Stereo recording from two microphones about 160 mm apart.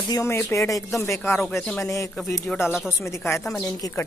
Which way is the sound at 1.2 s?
5° left (ahead or behind).